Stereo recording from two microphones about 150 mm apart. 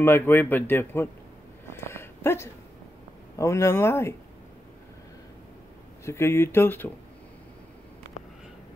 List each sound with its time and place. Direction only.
0.0 s a man's voice: 15° left (ahead or behind)
1.7 s a sound: 15° left (ahead or behind)
3.3 s a man's voice: 20° left (ahead or behind)
6.0 s a man's voice: 15° left (ahead or behind)